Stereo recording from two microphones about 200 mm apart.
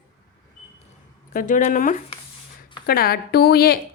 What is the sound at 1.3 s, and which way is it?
Speech, 40° left (ahead or behind).